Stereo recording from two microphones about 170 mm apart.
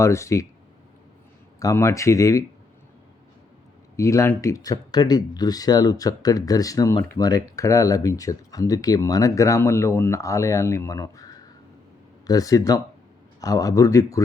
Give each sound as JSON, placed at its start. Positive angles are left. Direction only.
{"t": 0.0, "sound": "speech", "side_deg": 15}
{"t": 1.5, "sound": "speech", "side_deg": 20}
{"t": 3.9, "sound": "speech", "side_deg": 20}
{"t": 12.3, "sound": "speech", "side_deg": 20}